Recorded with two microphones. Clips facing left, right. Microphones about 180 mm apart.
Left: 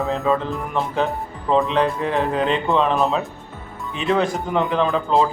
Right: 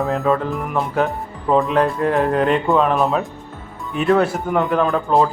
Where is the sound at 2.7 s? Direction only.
Centre (ahead or behind).